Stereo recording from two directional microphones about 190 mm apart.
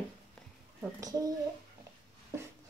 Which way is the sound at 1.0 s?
20° right (ahead or behind).